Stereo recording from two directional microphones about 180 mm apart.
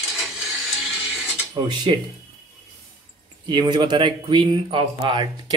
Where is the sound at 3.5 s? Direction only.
25° right (ahead or behind).